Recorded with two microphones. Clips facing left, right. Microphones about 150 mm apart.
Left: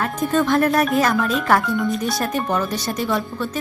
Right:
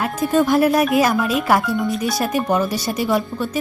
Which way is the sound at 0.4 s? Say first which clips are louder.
Right 2 dB; 10° right (ahead or behind).